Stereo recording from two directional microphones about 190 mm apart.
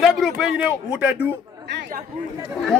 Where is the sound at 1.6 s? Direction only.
65° right (ahead or behind).